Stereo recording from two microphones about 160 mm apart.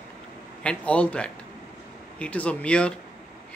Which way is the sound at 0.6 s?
5° left (ahead or behind).